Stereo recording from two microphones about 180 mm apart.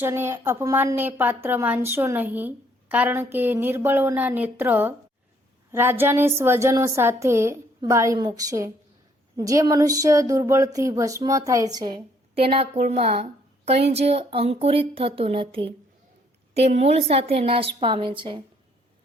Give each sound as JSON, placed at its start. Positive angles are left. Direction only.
{"t": 0.0, "sound": "a woman's voice", "side_deg": -15}